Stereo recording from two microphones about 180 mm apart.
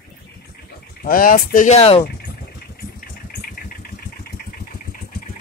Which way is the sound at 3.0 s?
55° left (ahead or behind).